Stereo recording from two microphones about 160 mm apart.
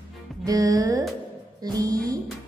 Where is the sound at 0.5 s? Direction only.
25° right (ahead or behind).